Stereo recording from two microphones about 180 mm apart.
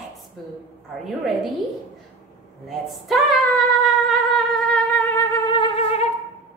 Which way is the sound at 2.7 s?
Centre (ahead or behind).